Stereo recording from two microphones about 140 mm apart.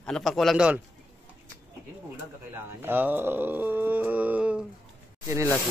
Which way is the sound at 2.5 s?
15° right (ahead or behind).